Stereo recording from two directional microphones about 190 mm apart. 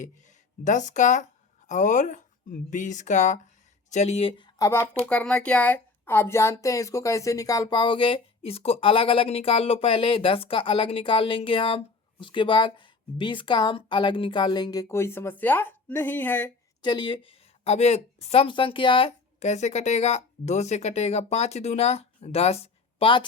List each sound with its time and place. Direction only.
0.6 s speech: 40° left (ahead or behind); by 16.5 s 10° left (ahead or behind)
16.8 s speech: 25° left (ahead or behind)
17.6 s speech: 35° left (ahead or behind)